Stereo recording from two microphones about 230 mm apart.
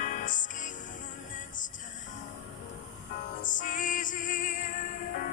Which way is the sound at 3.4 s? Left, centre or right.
Left.